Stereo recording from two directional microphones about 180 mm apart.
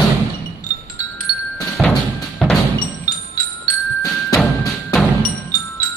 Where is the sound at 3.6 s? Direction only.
20° left (ahead or behind).